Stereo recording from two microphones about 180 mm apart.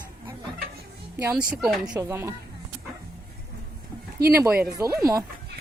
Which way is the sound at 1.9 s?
15° right (ahead or behind).